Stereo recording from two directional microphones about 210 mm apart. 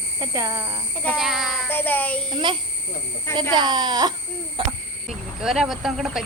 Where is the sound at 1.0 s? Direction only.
Centre (ahead or behind).